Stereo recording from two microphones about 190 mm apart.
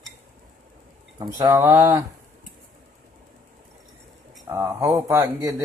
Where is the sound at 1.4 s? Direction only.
20° right (ahead or behind).